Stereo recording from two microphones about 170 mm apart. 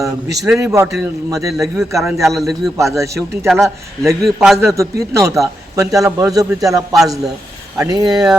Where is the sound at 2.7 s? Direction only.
15° right (ahead or behind).